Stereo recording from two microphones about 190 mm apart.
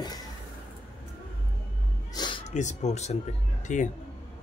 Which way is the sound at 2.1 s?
20° left (ahead or behind).